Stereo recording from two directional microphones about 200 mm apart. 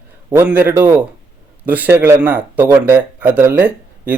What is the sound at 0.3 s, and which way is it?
A man's voice, 10° right (ahead or behind).